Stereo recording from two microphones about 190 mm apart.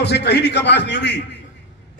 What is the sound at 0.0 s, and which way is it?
A man's voice, 60° left (ahead or behind).